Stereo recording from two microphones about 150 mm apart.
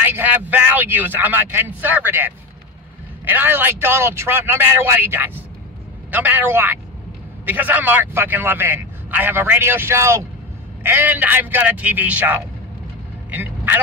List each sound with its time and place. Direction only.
0.0 s a man's voice: 10° right (ahead or behind)
13.3 s vehicle: 10° right (ahead or behind)